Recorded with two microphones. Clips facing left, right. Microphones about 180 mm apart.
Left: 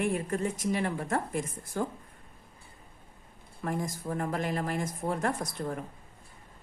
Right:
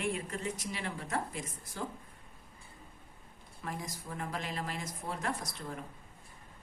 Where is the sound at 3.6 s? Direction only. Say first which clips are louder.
Left 8 dB; 50° left (ahead or behind).